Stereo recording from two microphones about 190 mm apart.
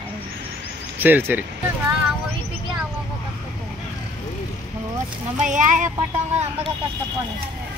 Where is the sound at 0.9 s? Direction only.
10° right (ahead or behind).